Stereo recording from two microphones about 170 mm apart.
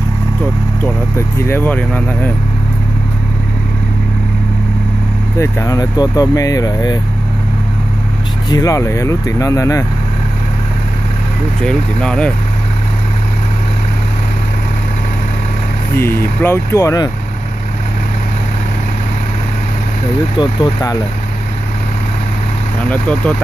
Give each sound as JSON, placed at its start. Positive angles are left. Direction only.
{"t": 1.5, "sound": "speech", "side_deg": 10}
{"t": 5.4, "sound": "speech", "side_deg": 20}
{"t": 8.5, "sound": "speech", "side_deg": 20}
{"t": 11.6, "sound": "speech", "side_deg": 5}
{"t": 16.4, "sound": "speech", "side_deg": 15}
{"t": 20.3, "sound": "speech", "side_deg": 25}
{"t": 22.8, "sound": "speech", "side_deg": 5}